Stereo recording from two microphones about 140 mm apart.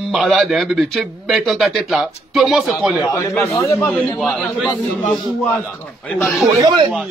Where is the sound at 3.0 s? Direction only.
20° left (ahead or behind).